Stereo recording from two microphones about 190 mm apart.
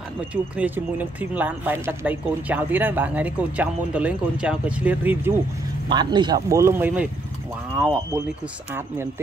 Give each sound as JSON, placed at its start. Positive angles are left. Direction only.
{"t": 0.3, "sound": "speech", "side_deg": -10}
{"t": 5.9, "sound": "speech", "side_deg": -25}